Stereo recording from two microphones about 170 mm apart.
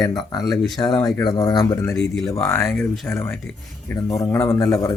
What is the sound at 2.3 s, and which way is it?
Speech, 15° left (ahead or behind).